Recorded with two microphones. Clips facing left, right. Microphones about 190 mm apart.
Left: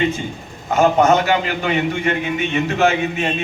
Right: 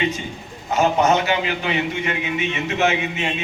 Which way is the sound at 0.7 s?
50° left (ahead or behind).